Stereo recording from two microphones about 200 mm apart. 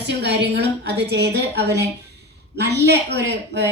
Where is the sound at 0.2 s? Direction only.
55° right (ahead or behind).